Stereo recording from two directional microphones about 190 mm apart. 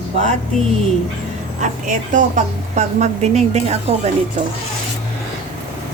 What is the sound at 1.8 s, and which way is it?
Speech, 40° right (ahead or behind).